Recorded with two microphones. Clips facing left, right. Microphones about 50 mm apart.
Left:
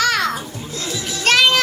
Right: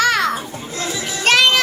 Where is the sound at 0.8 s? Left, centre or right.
Right.